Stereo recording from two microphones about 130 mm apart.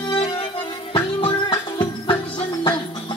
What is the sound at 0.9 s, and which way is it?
Music, 45° left (ahead or behind).